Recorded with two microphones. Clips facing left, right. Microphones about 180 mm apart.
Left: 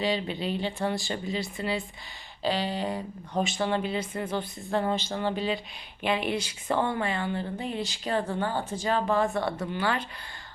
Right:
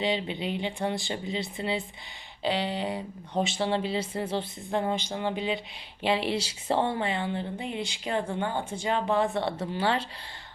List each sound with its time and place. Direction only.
0.0 s speech: 20° right (ahead or behind)
4.7 s speech: 15° right (ahead or behind)
6.0 s speech: 30° right (ahead or behind)